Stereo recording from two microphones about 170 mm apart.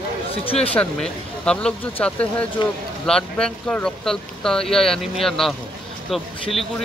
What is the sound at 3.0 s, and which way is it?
Speech, 5° left (ahead or behind).